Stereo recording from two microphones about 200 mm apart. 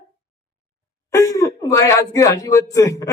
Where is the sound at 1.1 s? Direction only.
15° left (ahead or behind).